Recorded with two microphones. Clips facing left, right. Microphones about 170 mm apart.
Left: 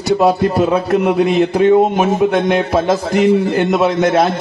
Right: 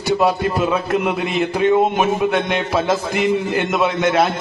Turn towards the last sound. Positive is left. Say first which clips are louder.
# left 4 dB
turn(degrees=35)  # may be behind; listen again after turning